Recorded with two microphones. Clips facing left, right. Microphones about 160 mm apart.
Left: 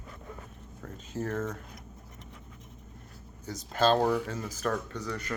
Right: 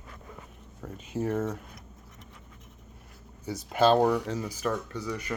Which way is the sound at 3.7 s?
15° right (ahead or behind).